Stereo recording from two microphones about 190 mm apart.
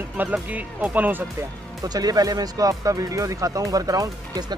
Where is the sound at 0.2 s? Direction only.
10° right (ahead or behind).